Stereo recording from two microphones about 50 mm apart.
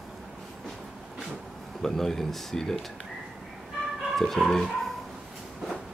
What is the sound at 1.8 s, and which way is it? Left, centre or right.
Speech, centre.